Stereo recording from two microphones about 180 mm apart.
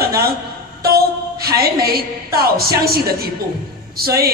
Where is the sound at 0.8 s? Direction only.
60° right (ahead or behind).